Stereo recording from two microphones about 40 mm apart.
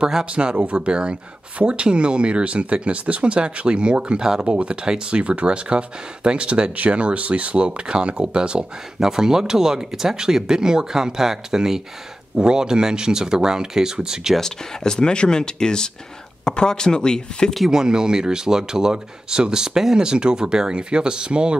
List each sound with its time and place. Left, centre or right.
0.2 s speech: right
4.5 s speech: right
14.4 s speech: centre
17.6 s speech: centre